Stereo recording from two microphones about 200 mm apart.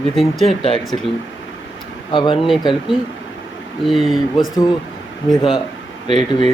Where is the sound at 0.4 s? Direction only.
30° left (ahead or behind).